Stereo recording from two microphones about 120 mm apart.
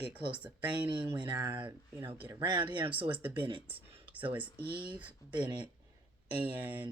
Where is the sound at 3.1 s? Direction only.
15° right (ahead or behind).